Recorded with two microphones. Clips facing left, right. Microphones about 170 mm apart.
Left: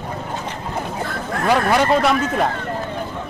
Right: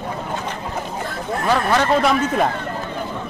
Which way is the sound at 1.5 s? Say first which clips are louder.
Left 2 dB; 10° left (ahead or behind).